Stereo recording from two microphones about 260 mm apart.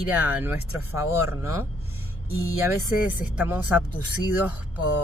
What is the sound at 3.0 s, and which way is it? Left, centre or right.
Speech, centre.